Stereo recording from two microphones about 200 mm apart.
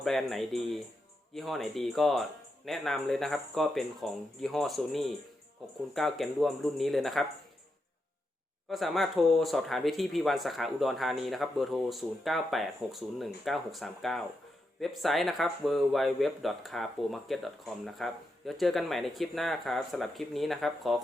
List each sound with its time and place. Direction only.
0.0 s speech: centre (ahead or behind)
8.7 s speech: centre (ahead or behind)